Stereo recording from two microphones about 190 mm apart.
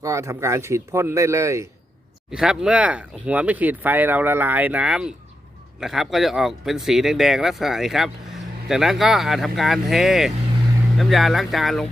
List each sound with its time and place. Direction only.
0.0 s speech: 15° right (ahead or behind)
2.3 s speech: 5° right (ahead or behind)